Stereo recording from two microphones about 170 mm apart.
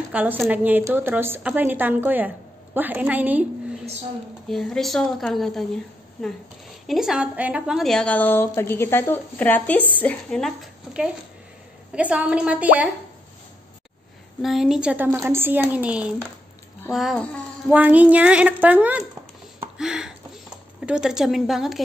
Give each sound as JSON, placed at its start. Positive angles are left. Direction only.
{"t": 0.1, "sound": "speech", "side_deg": -10}
{"t": 4.5, "sound": "a woman's voice", "side_deg": 0}
{"t": 6.9, "sound": "a woman's voice", "side_deg": -5}
{"t": 14.4, "sound": "a woman's voice", "side_deg": 0}
{"t": 19.8, "sound": "a sound", "side_deg": -5}
{"t": 20.8, "sound": "a woman's voice", "side_deg": -5}